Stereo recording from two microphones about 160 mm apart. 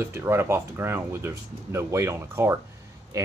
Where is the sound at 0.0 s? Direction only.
15° right (ahead or behind).